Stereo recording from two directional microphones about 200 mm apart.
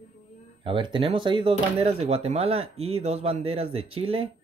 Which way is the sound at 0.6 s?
25° right (ahead or behind).